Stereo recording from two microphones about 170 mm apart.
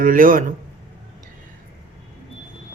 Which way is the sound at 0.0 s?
55° right (ahead or behind).